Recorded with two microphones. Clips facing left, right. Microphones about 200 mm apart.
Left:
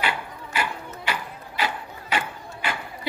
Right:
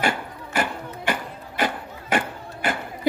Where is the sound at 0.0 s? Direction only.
45° right (ahead or behind).